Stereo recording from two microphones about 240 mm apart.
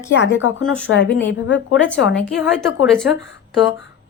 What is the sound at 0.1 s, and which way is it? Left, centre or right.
Speech, left.